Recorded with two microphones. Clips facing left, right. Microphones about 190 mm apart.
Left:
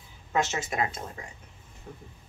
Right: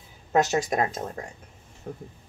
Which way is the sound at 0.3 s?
40° right (ahead or behind).